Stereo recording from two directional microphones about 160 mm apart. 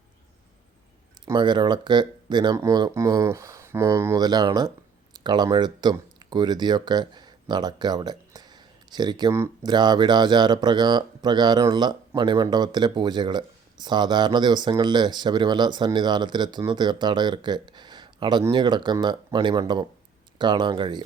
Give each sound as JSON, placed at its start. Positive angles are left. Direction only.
{"t": 1.2, "sound": "speech", "side_deg": -25}